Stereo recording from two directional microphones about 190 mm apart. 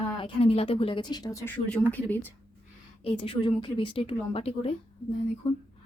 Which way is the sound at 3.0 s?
30° left (ahead or behind).